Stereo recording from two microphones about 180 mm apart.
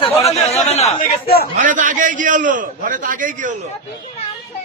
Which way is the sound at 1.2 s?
55° left (ahead or behind).